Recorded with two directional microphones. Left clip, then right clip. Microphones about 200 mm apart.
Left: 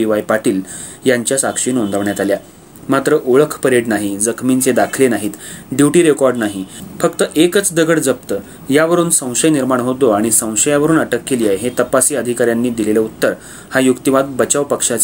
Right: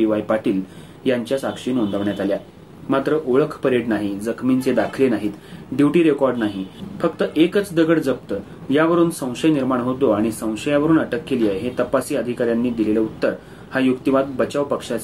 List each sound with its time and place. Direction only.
0.0 s speech: 40° left (ahead or behind)